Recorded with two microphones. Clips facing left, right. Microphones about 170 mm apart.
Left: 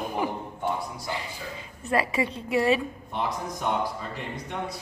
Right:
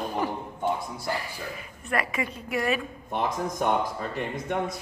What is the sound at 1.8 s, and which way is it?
Speech, 25° left (ahead or behind).